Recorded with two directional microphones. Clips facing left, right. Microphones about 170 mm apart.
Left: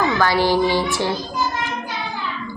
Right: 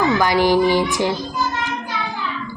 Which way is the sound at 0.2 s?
15° right (ahead or behind).